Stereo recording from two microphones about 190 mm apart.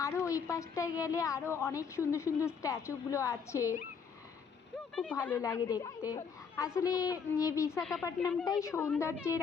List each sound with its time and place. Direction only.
0.0 s a woman's voice: 15° left (ahead or behind)
5.1 s a woman's voice: 10° left (ahead or behind)
5.4 s a woman's voice: 20° left (ahead or behind)
7.8 s speech: centre (ahead or behind)
8.0 s a woman's voice: 15° left (ahead or behind)